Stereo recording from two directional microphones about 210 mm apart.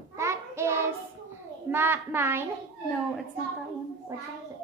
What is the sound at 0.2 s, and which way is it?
Child singing, 15° right (ahead or behind).